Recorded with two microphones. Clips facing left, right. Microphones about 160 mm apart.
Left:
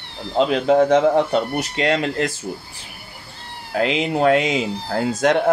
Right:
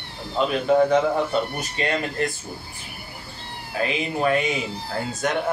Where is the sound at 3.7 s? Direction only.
80° left.